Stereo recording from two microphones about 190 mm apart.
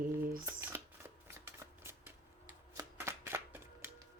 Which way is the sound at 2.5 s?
15° right (ahead or behind).